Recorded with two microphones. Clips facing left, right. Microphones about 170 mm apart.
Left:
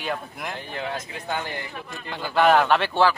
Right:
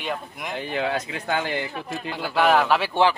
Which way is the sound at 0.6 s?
80° right.